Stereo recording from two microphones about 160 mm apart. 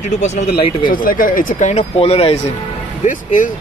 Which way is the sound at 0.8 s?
60° left (ahead or behind).